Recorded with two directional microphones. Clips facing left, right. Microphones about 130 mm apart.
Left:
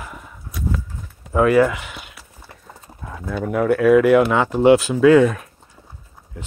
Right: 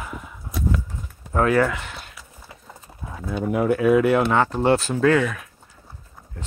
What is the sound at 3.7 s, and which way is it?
Speech, centre (ahead or behind).